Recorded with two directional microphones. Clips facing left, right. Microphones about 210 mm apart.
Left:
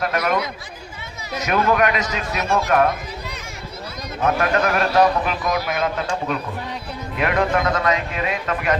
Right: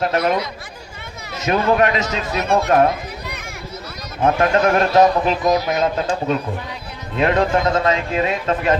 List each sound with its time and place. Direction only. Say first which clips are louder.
0.0 s a man's voice: right 3 dB; 25° right (ahead or behind)
1.4 s a man's voice: right 2 dB; 25° right (ahead or behind)
4.2 s a man's voice: right 4 dB; 30° right (ahead or behind)